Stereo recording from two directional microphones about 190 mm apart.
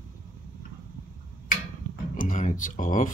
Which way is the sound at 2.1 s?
45° left (ahead or behind).